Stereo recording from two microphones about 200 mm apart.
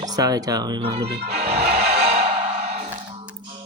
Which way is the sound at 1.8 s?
55° right (ahead or behind).